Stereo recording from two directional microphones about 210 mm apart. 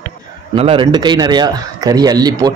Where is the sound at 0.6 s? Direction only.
25° right (ahead or behind).